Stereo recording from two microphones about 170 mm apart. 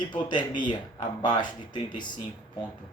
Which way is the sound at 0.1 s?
25° left (ahead or behind).